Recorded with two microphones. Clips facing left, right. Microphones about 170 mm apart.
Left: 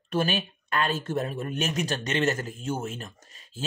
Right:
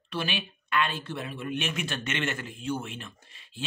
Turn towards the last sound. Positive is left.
turn(degrees=40)  # may be behind; listen again after turning